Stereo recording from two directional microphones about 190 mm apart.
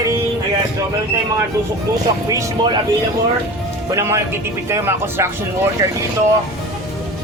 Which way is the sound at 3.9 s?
15° right (ahead or behind).